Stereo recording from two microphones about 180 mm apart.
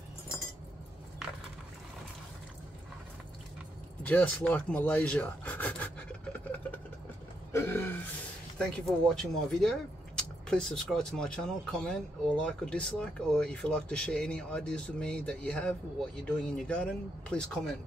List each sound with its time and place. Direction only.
4.0 s rub: 10° left (ahead or behind)
7.5 s a sound: 15° left (ahead or behind)
8.5 s speech: 5° left (ahead or behind)